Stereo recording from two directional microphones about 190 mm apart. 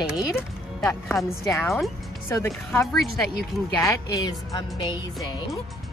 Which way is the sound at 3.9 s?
20° left (ahead or behind).